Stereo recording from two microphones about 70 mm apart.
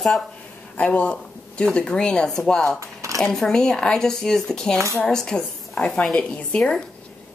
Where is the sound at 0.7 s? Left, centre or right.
Centre.